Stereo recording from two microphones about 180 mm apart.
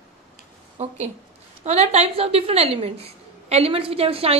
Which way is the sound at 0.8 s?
40° right (ahead or behind).